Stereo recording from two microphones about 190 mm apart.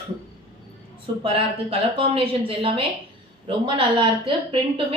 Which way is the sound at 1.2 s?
30° right (ahead or behind).